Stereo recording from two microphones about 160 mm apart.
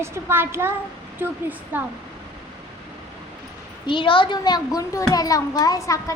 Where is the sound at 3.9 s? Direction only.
30° left (ahead or behind).